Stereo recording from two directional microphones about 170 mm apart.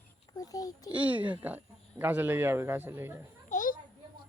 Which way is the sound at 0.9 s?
10° right (ahead or behind).